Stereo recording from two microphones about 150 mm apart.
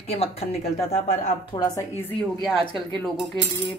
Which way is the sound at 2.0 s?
10° left (ahead or behind).